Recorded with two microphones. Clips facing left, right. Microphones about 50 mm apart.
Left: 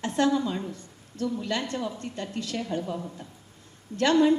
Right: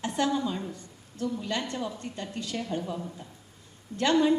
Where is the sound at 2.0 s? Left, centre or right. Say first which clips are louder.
Left 2 dB; left.